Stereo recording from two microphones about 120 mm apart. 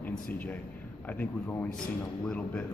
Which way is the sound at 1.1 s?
15° left (ahead or behind).